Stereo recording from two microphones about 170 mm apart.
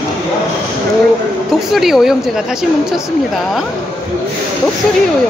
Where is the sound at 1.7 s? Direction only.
Centre (ahead or behind).